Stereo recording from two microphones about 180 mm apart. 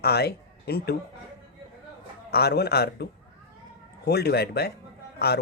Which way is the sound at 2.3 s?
60° left (ahead or behind).